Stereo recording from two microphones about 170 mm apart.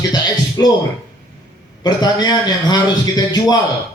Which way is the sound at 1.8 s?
25° left (ahead or behind).